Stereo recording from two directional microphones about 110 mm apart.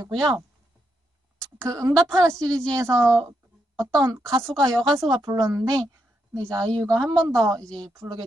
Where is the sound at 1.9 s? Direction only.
5° left (ahead or behind).